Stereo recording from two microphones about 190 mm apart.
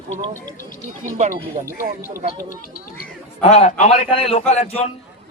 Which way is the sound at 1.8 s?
40° right (ahead or behind).